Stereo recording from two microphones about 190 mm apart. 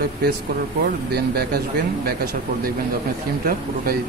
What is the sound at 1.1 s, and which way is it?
Speech, 55° right (ahead or behind).